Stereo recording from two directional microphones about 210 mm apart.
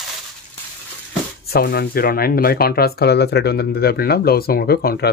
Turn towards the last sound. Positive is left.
turn(degrees=45)  # may be behind; listen again after turning